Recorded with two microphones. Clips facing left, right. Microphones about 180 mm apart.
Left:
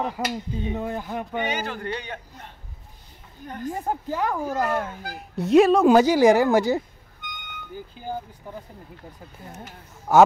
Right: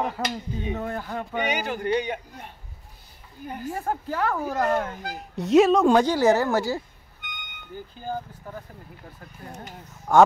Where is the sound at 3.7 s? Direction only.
15° left (ahead or behind).